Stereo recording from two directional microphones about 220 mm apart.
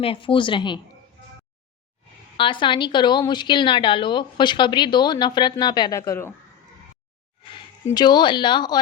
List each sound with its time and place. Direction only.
0.0 s a woman's voice: 25° left (ahead or behind)
2.4 s a woman's voice: 20° left (ahead or behind)
7.5 s a woman's voice: 20° left (ahead or behind)